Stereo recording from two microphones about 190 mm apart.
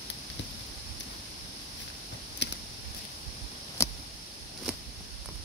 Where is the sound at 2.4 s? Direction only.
65° left (ahead or behind).